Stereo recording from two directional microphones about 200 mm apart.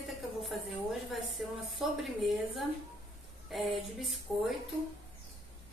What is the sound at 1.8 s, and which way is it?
Speech, 5° right (ahead or behind).